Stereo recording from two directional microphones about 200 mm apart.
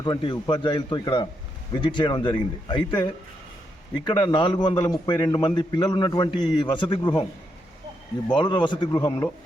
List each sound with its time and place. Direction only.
0.0 s a man's voice: 25° left (ahead or behind)
8.4 s a man's voice: 20° left (ahead or behind)